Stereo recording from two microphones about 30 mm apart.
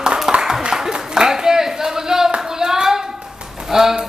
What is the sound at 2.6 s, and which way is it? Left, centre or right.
Hands, centre.